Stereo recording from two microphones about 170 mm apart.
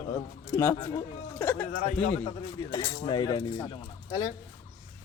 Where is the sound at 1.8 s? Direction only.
40° left (ahead or behind).